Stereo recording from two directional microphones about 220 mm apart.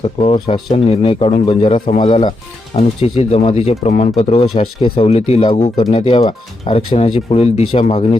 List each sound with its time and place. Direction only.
0.0 s speech: 25° left (ahead or behind)